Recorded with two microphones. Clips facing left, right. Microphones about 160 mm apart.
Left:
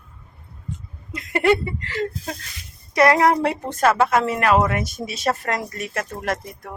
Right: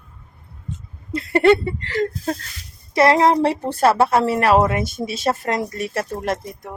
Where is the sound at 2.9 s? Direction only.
25° right (ahead or behind).